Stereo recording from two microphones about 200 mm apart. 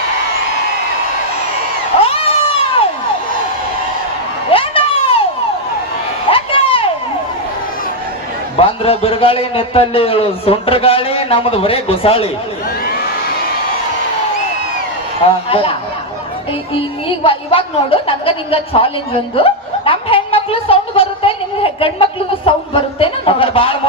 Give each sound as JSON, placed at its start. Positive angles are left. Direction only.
{"t": 2.0, "sound": "cat", "side_deg": 30}
{"t": 4.5, "sound": "a sound", "side_deg": 25}
{"t": 6.3, "sound": "a sound", "side_deg": 25}
{"t": 8.5, "sound": "a man's voice", "side_deg": 30}
{"t": 15.4, "sound": "a man's voice", "side_deg": 30}
{"t": 17.2, "sound": "a man's voice", "side_deg": 25}
{"t": 19.4, "sound": "snicker", "side_deg": 25}
{"t": 22.4, "sound": "a man's voice", "side_deg": 25}